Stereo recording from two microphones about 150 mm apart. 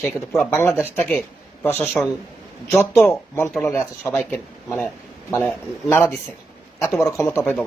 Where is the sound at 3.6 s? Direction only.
15° left (ahead or behind).